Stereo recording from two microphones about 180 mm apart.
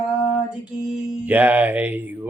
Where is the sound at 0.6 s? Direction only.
5° right (ahead or behind).